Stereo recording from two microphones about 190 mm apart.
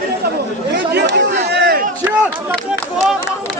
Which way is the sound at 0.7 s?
60° right (ahead or behind).